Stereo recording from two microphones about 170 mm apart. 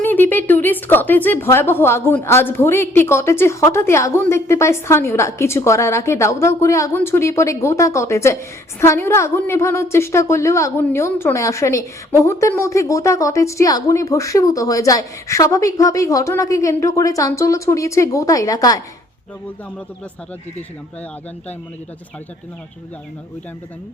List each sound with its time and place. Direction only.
0.0 s a woman's voice: 10° left (ahead or behind)